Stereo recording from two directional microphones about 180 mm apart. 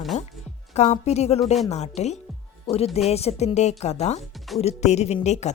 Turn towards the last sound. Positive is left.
turn(degrees=40)  # may be behind; listen again after turning